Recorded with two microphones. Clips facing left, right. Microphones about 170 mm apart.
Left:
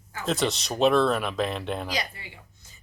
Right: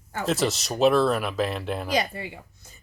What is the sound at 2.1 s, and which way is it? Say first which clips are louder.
Speech: right 11 dB; 50° right (ahead or behind).